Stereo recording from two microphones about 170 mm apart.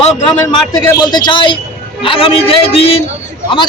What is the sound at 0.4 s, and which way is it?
A man's voice, 20° left (ahead or behind).